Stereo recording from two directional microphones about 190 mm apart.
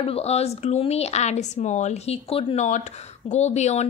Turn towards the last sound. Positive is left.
turn(degrees=35)  # may be behind; listen again after turning